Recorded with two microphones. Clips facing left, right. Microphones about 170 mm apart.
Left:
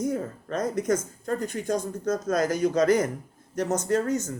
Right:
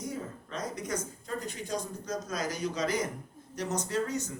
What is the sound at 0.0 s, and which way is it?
Speech, 50° left (ahead or behind).